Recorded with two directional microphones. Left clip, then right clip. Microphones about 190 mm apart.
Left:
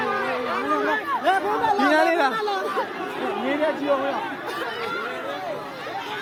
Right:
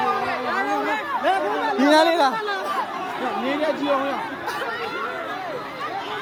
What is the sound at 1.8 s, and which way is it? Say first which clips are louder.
Speech: right 5 dB; 35° right (ahead or behind).